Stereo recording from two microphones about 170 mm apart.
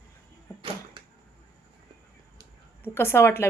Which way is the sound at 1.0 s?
30° right (ahead or behind).